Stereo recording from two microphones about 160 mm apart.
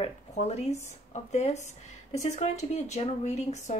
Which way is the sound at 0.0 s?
40° left (ahead or behind).